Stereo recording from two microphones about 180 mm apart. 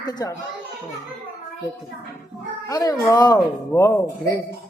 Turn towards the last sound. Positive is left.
turn(degrees=15)  # may be behind; listen again after turning